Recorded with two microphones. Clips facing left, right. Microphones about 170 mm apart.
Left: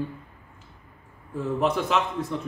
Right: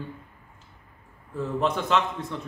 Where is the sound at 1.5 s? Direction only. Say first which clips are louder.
Even; 5° left (ahead or behind).